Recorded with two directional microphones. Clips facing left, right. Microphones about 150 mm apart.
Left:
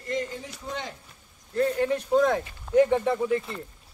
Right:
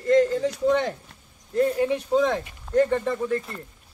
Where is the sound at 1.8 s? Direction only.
5° right (ahead or behind).